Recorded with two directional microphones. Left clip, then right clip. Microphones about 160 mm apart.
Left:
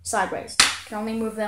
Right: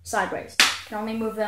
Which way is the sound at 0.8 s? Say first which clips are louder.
Even; 20° left (ahead or behind).